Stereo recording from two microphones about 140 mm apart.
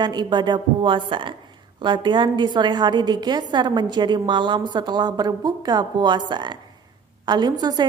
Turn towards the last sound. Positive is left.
turn(degrees=-30)  # may be behind; listen again after turning